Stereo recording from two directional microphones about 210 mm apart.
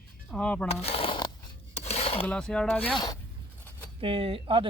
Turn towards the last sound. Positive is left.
turn(degrees=-25)  # may be behind; listen again after turning